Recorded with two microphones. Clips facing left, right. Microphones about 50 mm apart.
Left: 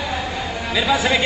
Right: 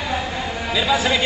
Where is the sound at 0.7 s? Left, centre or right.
Centre.